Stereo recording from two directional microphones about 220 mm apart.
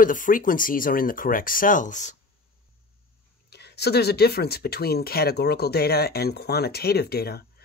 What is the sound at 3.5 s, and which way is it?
Speech, 50° left (ahead or behind).